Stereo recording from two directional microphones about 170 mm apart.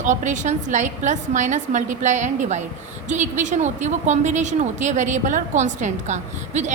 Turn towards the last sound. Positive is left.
turn(degrees=-45)  # may be behind; listen again after turning